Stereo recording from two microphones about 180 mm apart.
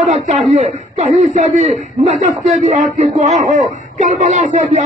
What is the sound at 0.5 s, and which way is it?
A man's voice, 40° right (ahead or behind).